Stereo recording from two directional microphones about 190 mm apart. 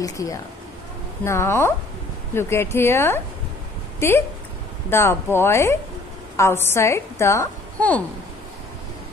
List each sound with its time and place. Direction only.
0.0 s a woman's voice: 20° left (ahead or behind)